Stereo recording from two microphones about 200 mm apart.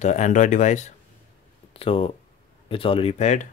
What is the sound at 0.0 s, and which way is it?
Speech, 35° left (ahead or behind).